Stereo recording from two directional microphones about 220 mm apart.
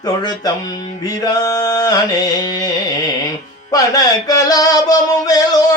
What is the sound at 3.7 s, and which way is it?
Music, 15° left (ahead or behind).